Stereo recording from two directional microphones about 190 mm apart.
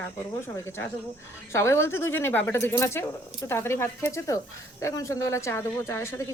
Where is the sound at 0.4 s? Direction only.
15° left (ahead or behind).